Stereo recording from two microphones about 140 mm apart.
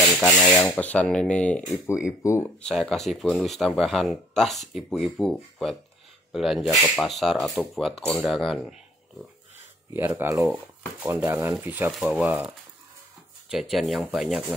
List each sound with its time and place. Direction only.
0.0 s rub: centre (ahead or behind)
0.7 s speech: 10° left (ahead or behind)
9.9 s speech: 15° right (ahead or behind)
11.9 s speech: centre (ahead or behind)
12.3 s speech: 10° right (ahead or behind)
13.5 s speech: centre (ahead or behind)